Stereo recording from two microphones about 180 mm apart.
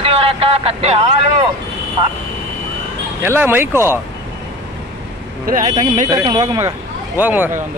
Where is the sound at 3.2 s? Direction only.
10° right (ahead or behind).